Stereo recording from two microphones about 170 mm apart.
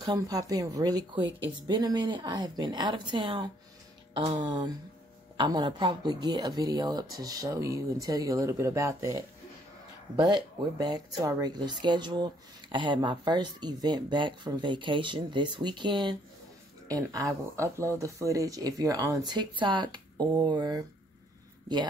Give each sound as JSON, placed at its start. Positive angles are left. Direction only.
{"t": 0.0, "sound": "speech", "side_deg": -25}